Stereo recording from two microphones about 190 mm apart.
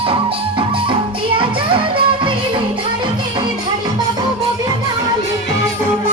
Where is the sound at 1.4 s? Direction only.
25° right (ahead or behind).